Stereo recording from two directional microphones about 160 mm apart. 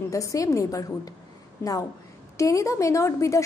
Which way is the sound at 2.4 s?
20° left (ahead or behind).